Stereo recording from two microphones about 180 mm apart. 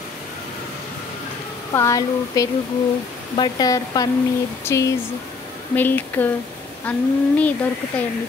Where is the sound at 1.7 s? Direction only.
15° left (ahead or behind).